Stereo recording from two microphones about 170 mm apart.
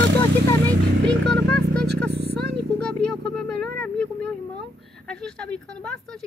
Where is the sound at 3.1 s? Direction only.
5° left (ahead or behind).